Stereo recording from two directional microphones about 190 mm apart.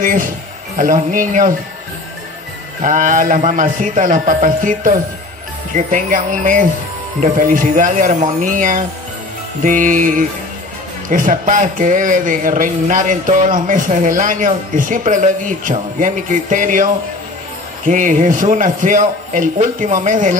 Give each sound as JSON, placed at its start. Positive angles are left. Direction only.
{"t": 0.0, "sound": "speech", "side_deg": -45}
{"t": 2.8, "sound": "speech", "side_deg": -45}